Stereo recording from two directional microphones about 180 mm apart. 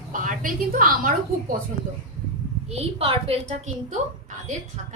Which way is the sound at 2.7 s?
35° right (ahead or behind).